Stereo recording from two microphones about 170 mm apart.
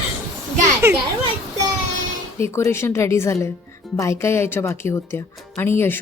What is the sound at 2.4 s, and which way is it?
Speech, 15° left (ahead or behind).